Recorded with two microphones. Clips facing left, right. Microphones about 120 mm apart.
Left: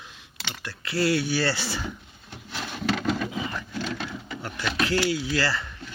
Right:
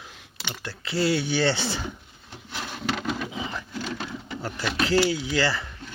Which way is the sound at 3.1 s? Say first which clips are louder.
Left 2 dB; 15° right (ahead or behind).